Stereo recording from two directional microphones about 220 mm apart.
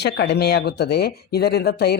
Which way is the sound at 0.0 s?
50° left (ahead or behind).